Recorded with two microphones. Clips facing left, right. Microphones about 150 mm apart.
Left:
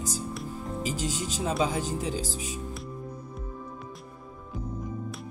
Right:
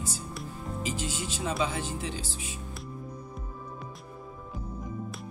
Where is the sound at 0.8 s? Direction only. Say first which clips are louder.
Left 2 dB; 40° left (ahead or behind).